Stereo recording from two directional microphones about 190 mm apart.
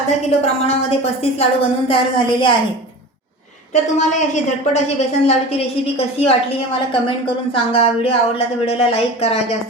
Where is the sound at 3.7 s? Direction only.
40° left (ahead or behind).